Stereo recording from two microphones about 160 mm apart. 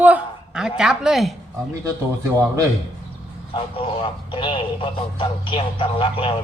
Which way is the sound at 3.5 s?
35° left (ahead or behind).